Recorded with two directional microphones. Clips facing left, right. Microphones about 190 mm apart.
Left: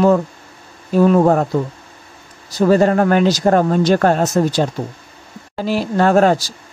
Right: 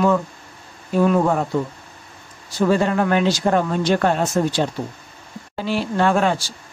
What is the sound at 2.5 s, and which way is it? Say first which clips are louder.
Speech: left 5 dB; 40° left (ahead or behind).